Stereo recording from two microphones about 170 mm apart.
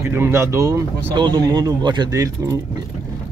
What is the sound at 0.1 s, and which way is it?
Speech, 15° right (ahead or behind).